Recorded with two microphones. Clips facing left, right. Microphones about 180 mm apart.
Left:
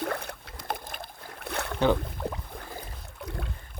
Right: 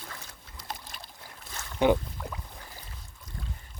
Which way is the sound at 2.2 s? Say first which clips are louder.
Left 6 dB; 25° left (ahead or behind).